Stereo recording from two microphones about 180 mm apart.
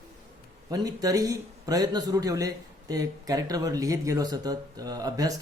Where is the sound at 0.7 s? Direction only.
20° right (ahead or behind).